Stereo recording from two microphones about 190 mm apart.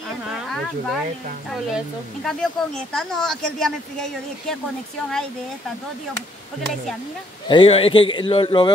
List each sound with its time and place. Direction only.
0.3 s speech: centre (ahead or behind)
2.2 s speech: 5° left (ahead or behind)
7.4 s a man's voice: 25° left (ahead or behind)